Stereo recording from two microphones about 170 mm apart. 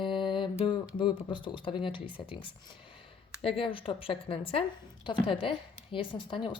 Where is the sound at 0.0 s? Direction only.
30° left (ahead or behind).